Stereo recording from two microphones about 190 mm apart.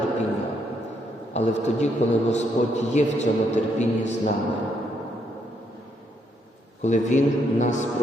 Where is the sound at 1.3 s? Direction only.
35° left (ahead or behind).